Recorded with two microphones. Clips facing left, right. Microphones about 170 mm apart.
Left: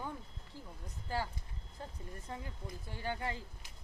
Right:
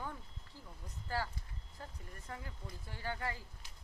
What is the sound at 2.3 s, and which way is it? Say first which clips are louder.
Speech: left 2 dB; 20° left (ahead or behind).